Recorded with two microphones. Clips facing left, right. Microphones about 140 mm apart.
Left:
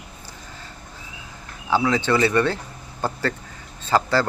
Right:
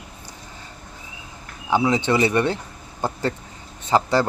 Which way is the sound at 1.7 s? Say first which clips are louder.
Right 1 dB; 20° right (ahead or behind).